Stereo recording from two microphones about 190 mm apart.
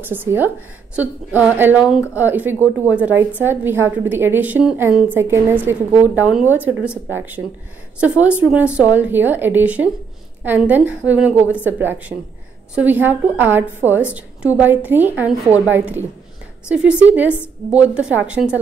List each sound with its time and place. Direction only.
0.0 s a woman's voice: 10° right (ahead or behind)